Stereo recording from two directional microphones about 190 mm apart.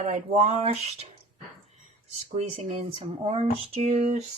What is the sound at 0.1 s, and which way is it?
Speech, 40° right (ahead or behind).